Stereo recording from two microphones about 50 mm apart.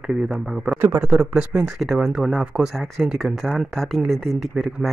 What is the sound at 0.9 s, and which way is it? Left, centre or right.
Speech, right.